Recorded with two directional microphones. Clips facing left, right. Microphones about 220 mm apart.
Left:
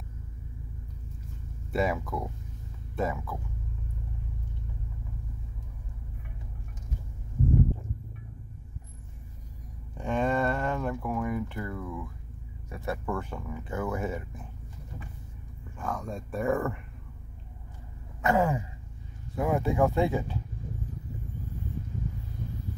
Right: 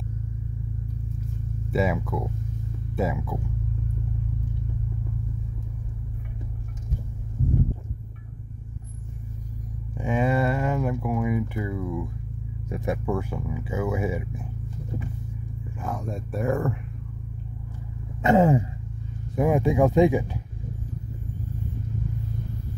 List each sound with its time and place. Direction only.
1.7 s speech: centre (ahead or behind)
9.9 s speech: 10° right (ahead or behind)
15.8 s speech: 5° right (ahead or behind)
18.2 s a sound: 20° right (ahead or behind)
19.3 s speech: 15° right (ahead or behind)